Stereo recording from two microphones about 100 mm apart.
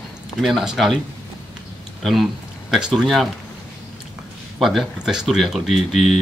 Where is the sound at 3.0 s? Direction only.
Centre (ahead or behind).